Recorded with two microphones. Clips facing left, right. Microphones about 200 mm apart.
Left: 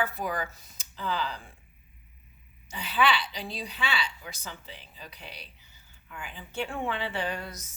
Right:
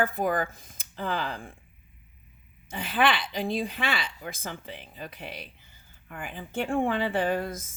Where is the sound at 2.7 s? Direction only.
50° right (ahead or behind).